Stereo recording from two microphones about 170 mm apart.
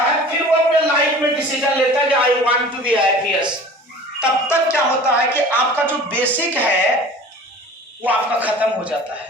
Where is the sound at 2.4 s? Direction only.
10° right (ahead or behind).